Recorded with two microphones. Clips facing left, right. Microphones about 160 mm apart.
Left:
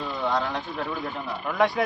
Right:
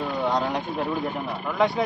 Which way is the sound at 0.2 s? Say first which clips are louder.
Right 1 dB; 20° right (ahead or behind).